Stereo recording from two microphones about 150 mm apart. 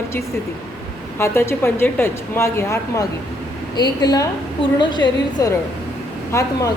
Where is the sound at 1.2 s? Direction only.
15° left (ahead or behind).